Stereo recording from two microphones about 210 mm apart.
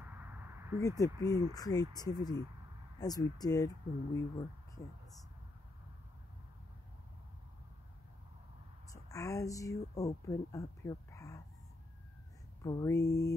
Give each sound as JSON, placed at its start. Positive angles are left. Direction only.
{"t": 0.0, "sound": "a sound", "side_deg": -10}
{"t": 0.7, "sound": "speech", "side_deg": 15}
{"t": 8.9, "sound": "speech", "side_deg": 15}
{"t": 12.6, "sound": "speech", "side_deg": 15}